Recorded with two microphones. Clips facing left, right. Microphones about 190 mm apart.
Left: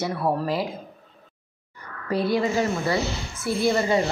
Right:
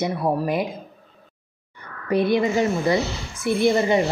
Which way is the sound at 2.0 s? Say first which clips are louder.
Right 3 dB; 20° right (ahead or behind).